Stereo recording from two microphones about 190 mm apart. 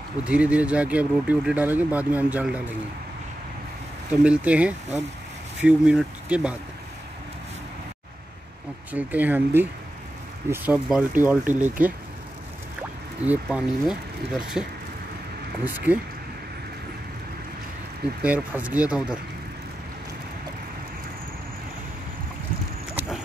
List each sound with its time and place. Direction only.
0.2 s speech: 5° right (ahead or behind)
4.1 s speech: 5° right (ahead or behind)
8.9 s speech: 10° right (ahead or behind)
13.2 s speech: 5° right (ahead or behind)
15.6 s speech: 10° right (ahead or behind)
18.2 s speech: 5° right (ahead or behind)
22.9 s clip-clop: 5° right (ahead or behind)